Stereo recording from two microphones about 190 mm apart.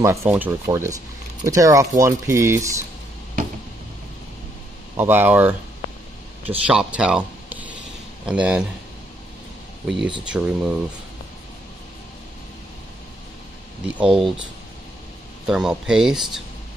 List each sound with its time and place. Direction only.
0.0 s speech: 15° right (ahead or behind)
4.9 s speech: 10° right (ahead or behind)
6.6 s speech: 5° right (ahead or behind)
9.8 s speech: 5° right (ahead or behind)
13.9 s speech: 5° right (ahead or behind)
15.4 s speech: 5° right (ahead or behind)